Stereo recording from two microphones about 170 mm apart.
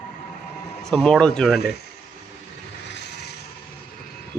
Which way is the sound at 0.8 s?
5° left (ahead or behind).